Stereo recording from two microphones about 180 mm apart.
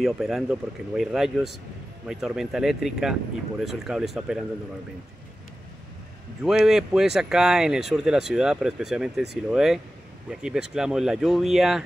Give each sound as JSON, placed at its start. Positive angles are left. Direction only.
{"t": 0.0, "sound": "speech", "side_deg": 0}
{"t": 6.4, "sound": "speech", "side_deg": 0}